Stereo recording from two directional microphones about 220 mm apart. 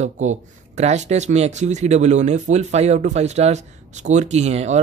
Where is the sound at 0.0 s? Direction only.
30° right (ahead or behind).